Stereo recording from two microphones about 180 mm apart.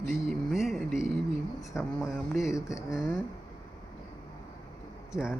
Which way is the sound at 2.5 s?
15° left (ahead or behind).